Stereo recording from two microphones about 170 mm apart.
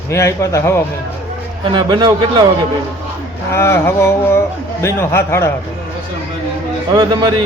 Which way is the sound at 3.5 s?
15° left (ahead or behind).